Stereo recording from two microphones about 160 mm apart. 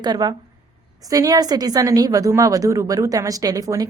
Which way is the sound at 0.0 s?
25° right (ahead or behind).